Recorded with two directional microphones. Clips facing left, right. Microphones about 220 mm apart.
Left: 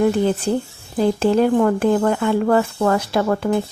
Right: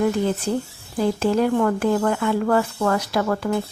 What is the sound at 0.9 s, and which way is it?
Speech, 30° left (ahead or behind).